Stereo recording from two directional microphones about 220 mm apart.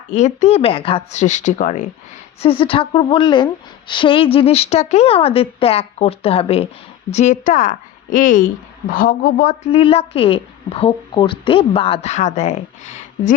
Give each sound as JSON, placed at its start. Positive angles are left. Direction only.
{"t": 0.1, "sound": "a woman's voice", "side_deg": 30}
{"t": 2.4, "sound": "a woman's voice", "side_deg": 25}
{"t": 9.8, "sound": "a woman's voice", "side_deg": 25}